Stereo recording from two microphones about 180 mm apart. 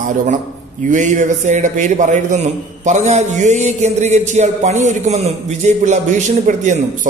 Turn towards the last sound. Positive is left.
turn(degrees=-45)  # may be behind; listen again after turning